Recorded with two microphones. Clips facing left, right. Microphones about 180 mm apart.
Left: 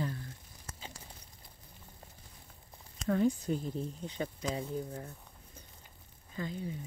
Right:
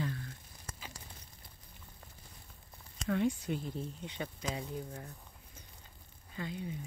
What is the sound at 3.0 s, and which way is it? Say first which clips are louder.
Speech: left 3 dB; 40° left (ahead or behind).